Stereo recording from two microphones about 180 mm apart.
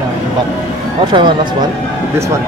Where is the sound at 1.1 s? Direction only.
25° right (ahead or behind).